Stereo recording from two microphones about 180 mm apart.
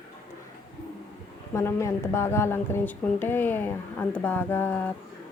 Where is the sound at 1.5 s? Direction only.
15° left (ahead or behind).